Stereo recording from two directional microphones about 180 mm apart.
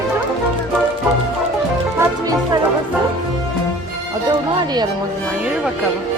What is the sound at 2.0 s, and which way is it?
Music, 20° right (ahead or behind).